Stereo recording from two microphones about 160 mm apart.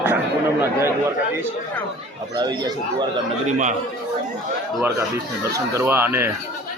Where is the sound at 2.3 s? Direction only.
25° right (ahead or behind).